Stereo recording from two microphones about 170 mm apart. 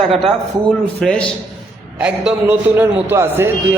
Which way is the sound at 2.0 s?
10° right (ahead or behind).